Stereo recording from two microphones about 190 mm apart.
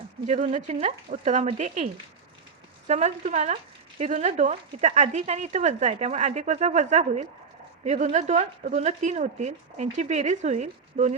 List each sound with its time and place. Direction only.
0.3 s speech: 40° right (ahead or behind)